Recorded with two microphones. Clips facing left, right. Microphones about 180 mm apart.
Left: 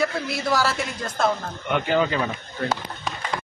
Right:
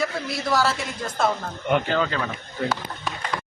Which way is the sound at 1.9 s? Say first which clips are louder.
Left 3 dB; 15° left (ahead or behind).